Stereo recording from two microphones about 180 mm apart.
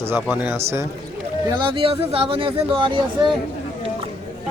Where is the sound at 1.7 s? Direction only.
30° right (ahead or behind).